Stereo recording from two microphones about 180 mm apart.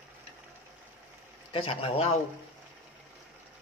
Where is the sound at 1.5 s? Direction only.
30° left (ahead or behind).